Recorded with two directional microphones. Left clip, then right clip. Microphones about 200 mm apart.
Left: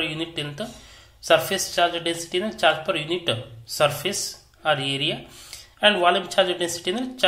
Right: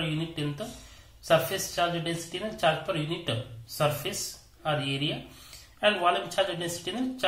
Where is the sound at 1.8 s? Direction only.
20° left (ahead or behind).